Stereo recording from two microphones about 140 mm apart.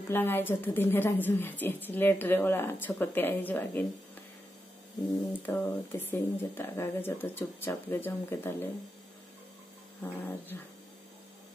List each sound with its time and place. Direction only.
0.1 s speech: 15° left (ahead or behind)
5.4 s speech: 15° left (ahead or behind)
10.0 s speech: 15° left (ahead or behind)